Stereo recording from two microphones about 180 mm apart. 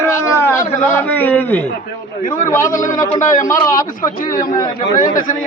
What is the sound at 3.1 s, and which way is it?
A man's voice, 50° left (ahead or behind).